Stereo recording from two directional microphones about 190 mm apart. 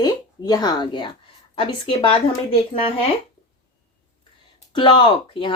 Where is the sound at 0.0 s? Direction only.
20° left (ahead or behind).